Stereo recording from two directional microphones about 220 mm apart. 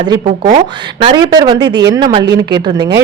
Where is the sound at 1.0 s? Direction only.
20° right (ahead or behind).